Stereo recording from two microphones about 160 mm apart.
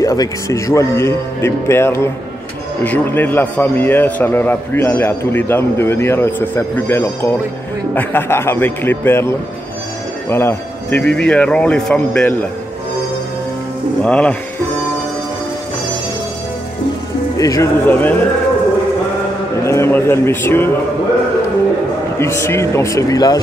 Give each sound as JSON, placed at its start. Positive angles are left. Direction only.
{"t": 0.0, "sound": "a man's voice", "side_deg": 20}
{"t": 10.3, "sound": "a man's voice", "side_deg": 10}
{"t": 14.0, "sound": "a man's voice", "side_deg": 5}
{"t": 17.4, "sound": "a man's voice", "side_deg": 20}
{"t": 19.6, "sound": "a man's voice", "side_deg": 15}
{"t": 22.2, "sound": "a man's voice", "side_deg": 15}